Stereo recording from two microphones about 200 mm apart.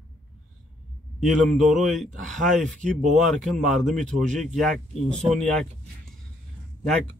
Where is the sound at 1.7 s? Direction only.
Centre (ahead or behind).